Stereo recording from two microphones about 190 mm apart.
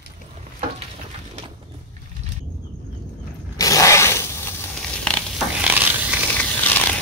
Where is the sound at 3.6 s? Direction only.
15° left (ahead or behind).